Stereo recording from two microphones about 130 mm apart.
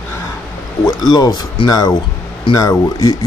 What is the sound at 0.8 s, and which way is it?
Speech, 35° left (ahead or behind).